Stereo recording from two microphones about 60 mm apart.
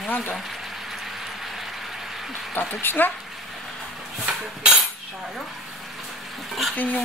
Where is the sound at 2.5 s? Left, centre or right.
Left.